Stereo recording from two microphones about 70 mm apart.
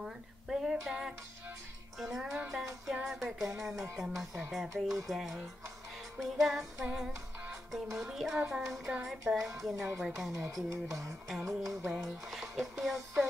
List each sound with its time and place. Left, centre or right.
0.0 s speech: centre
2.9 s music: centre
3.5 s speech: centre
9.3 s speech: centre
9.6 s speech: centre
10.3 s speech: right
11.9 s speech: centre